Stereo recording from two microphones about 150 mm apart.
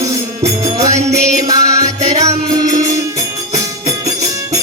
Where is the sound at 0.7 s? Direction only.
45° right (ahead or behind).